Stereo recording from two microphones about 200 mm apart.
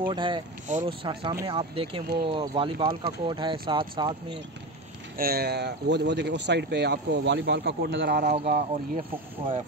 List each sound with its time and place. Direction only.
0.0 s speech: 25° right (ahead or behind)
5.1 s speech: 50° right (ahead or behind)
8.2 s speech: 35° right (ahead or behind)